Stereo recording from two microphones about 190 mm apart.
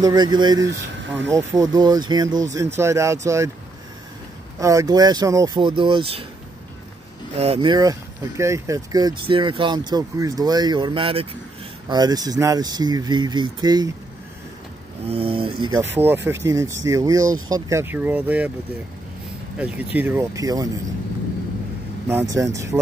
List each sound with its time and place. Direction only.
0.0 s speech: 20° right (ahead or behind)
0.7 s speech: 70° right (ahead or behind)
1.5 s speech: 20° right (ahead or behind)
4.6 s speech: 15° right (ahead or behind)
7.3 s speech: 30° right (ahead or behind)
15.0 s speech: 30° right (ahead or behind)
15.8 s speech: 10° right (ahead or behind)
19.6 s speech: 5° right (ahead or behind)
22.0 s speech: 15° right (ahead or behind)